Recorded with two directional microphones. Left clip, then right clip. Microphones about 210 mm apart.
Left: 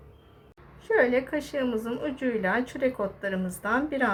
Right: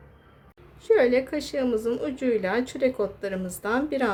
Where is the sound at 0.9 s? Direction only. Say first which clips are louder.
Right 3 dB; 35° right (ahead or behind).